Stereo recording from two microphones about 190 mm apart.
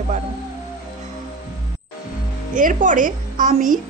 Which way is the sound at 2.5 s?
45° right (ahead or behind).